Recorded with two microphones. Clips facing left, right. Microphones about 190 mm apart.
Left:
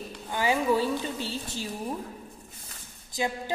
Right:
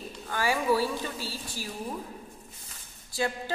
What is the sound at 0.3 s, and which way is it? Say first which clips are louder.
A woman's voice: left 1 dB; 20° left (ahead or behind).